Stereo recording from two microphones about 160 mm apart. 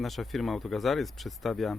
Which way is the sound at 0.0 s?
Centre (ahead or behind).